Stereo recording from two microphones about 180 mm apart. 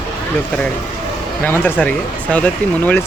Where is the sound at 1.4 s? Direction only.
10° left (ahead or behind).